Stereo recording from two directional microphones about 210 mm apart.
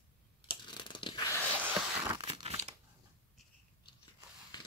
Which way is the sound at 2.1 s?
25° right (ahead or behind).